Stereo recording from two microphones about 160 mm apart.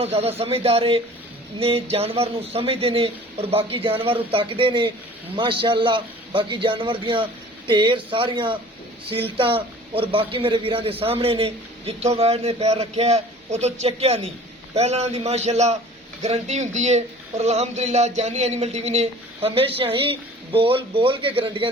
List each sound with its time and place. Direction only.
0.0 s speech: 40° right (ahead or behind)